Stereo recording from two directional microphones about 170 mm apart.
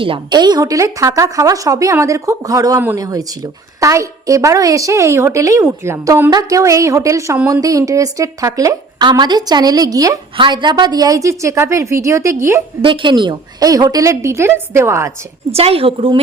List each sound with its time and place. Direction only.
0.0 s speech: 30° right (ahead or behind)
12.8 s speech: 30° right (ahead or behind)
15.5 s a woman's voice: 35° right (ahead or behind)